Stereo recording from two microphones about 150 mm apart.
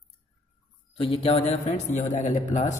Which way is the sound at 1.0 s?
35° left (ahead or behind).